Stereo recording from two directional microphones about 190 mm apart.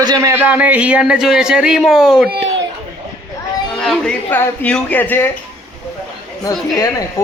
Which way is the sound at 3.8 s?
5° left (ahead or behind).